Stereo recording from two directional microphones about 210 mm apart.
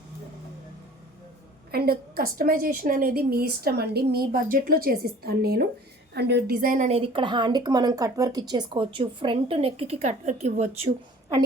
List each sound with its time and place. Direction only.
1.7 s a woman's voice: 45° right (ahead or behind); by 10.8 s 30° right (ahead or behind)